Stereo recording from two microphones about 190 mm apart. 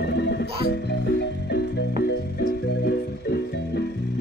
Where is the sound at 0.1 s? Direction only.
60° left (ahead or behind).